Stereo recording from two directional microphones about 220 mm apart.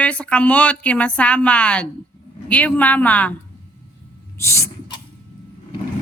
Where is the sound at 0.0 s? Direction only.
5° left (ahead or behind).